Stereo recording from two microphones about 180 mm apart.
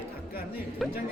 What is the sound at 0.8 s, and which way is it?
Speech, centre (ahead or behind).